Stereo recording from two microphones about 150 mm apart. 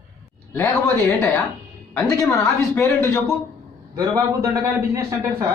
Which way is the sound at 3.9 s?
25° right (ahead or behind).